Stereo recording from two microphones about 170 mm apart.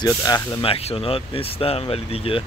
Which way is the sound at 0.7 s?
35° left (ahead or behind).